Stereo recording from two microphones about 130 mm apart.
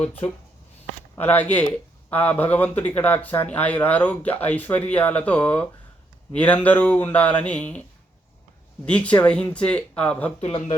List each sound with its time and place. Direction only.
0.0 s speech: 15° left (ahead or behind)
8.9 s speech: 10° left (ahead or behind)
10.4 s speech: 45° left (ahead or behind)